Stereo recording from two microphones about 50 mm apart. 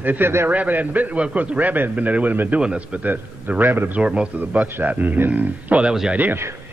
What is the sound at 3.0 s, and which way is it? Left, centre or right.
Speech, right.